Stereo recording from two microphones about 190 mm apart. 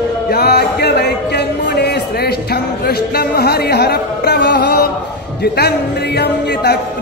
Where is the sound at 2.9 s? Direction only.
55° left (ahead or behind).